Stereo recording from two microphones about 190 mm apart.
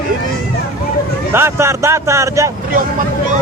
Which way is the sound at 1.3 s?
15° right (ahead or behind).